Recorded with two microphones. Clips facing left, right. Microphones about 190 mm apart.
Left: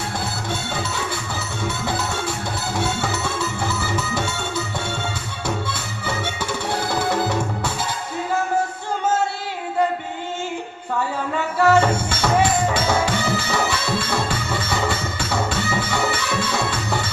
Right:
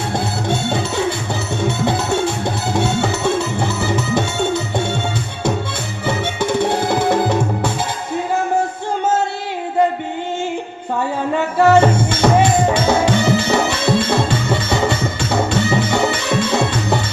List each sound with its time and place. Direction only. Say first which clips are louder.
0.1 s music: right 7 dB; 25° right (ahead or behind)
6.1 s music: right 7 dB; 20° right (ahead or behind)
11.6 s music: right 4 dB; 20° right (ahead or behind)